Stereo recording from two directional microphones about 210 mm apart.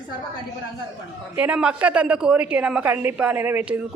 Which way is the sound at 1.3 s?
5° right (ahead or behind).